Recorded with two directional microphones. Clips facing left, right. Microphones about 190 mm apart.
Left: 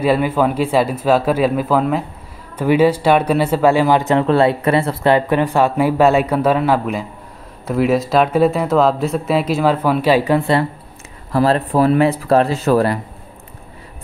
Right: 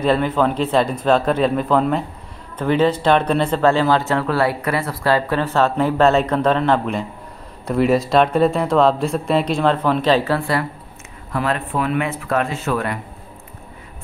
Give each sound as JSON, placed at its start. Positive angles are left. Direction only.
{"t": 0.0, "sound": "speech", "side_deg": 10}
{"t": 11.3, "sound": "speech", "side_deg": 35}